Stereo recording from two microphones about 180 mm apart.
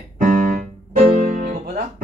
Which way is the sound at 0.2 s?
45° right (ahead or behind).